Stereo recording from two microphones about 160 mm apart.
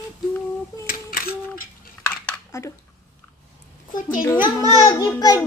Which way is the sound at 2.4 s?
20° left (ahead or behind).